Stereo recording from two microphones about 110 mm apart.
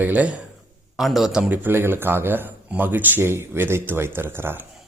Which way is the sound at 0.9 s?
Centre (ahead or behind).